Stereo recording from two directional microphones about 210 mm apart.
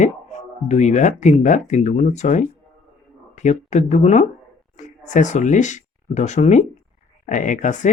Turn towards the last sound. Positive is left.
turn(degrees=35)  # may be behind; listen again after turning